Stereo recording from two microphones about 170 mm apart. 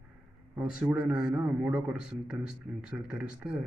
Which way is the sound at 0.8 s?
5° right (ahead or behind).